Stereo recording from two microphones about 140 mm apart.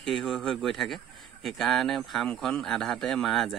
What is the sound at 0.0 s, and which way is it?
A man's voice, centre (ahead or behind).